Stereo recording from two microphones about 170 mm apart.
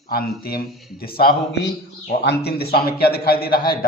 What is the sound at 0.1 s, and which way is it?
Speech, 60° left (ahead or behind).